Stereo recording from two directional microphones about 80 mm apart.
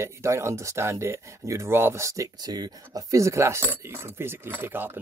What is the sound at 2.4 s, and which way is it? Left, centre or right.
Speech, right.